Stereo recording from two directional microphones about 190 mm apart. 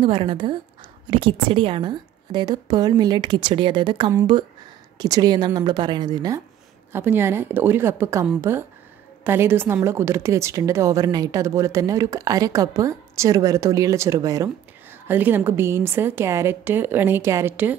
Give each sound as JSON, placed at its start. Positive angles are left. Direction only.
{"t": 0.0, "sound": "a woman's voice", "side_deg": -30}